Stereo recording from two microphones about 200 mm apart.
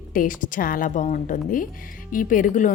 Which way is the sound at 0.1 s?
45° left (ahead or behind).